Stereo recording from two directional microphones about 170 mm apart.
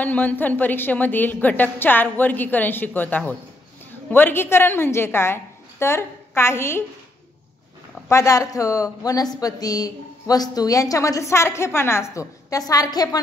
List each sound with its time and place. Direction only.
0.0 s a woman's voice: 10° left (ahead or behind)
8.1 s speech: 20° left (ahead or behind)